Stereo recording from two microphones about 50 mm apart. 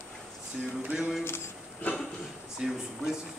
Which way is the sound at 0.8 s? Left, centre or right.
Centre.